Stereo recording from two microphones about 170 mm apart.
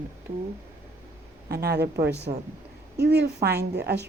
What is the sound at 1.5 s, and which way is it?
A woman's voice, 70° right (ahead or behind).